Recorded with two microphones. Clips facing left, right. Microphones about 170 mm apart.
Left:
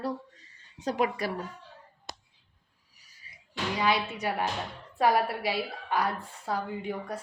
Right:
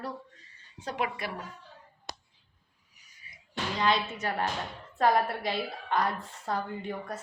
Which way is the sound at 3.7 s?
10° left (ahead or behind).